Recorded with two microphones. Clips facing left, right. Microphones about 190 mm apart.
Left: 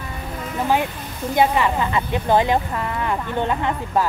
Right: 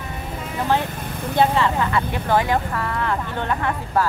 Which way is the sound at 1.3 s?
15° left (ahead or behind).